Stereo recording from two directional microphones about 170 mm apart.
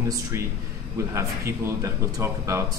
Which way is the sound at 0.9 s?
15° right (ahead or behind).